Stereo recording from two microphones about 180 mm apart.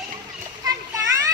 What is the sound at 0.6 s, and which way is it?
Splash, 20° right (ahead or behind).